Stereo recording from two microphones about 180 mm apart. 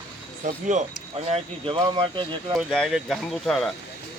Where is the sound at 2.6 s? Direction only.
Centre (ahead or behind).